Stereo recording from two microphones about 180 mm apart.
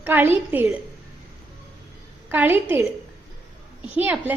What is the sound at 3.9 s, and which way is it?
Speech, 10° right (ahead or behind).